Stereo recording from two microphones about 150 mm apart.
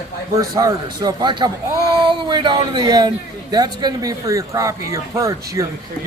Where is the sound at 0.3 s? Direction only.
25° right (ahead or behind).